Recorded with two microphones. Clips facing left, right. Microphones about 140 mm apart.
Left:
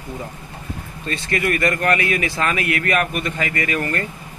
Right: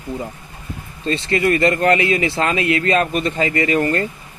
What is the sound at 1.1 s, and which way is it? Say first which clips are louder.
Speech: right 5 dB; 25° right (ahead or behind).